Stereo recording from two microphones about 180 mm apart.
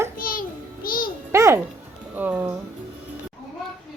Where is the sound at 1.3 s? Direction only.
15° right (ahead or behind).